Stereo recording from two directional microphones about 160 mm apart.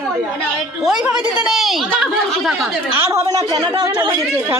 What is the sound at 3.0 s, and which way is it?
Speech, 15° right (ahead or behind).